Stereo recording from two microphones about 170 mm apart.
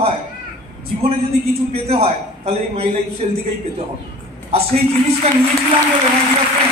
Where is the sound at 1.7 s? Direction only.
35° right (ahead or behind).